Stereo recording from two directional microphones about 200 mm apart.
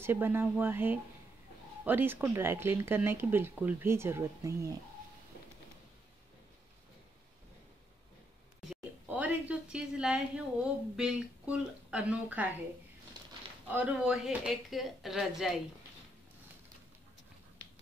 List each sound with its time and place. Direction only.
0.0 s speech: 10° right (ahead or behind)
8.6 s a woman's voice: 5° right (ahead or behind)
13.2 s pigeon: 20° right (ahead or behind)
13.7 s speech: 5° right (ahead or behind)